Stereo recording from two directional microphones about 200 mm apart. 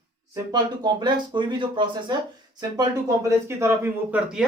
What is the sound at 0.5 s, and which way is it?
Speech, 20° right (ahead or behind).